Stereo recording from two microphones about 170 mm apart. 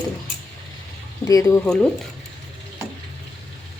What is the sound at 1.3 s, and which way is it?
Speech, 20° left (ahead or behind).